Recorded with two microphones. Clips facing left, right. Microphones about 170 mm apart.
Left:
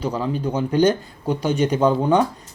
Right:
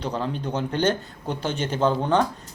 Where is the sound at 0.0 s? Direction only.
5° left (ahead or behind).